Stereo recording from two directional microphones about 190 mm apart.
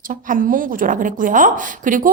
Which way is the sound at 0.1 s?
45° right (ahead or behind).